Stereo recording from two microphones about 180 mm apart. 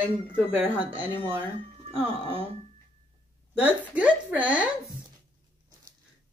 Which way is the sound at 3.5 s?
10° right (ahead or behind).